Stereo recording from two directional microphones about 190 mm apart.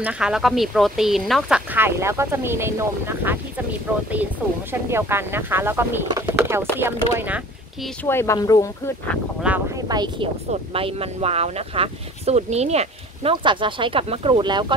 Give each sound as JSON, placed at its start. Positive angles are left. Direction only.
{"t": 0.0, "sound": "speech", "side_deg": -5}
{"t": 1.7, "sound": "speech", "side_deg": -10}
{"t": 4.4, "sound": "speech", "side_deg": -5}
{"t": 8.0, "sound": "speech", "side_deg": 15}
{"t": 9.5, "sound": "speech", "side_deg": -5}
{"t": 9.8, "sound": "speech", "side_deg": -20}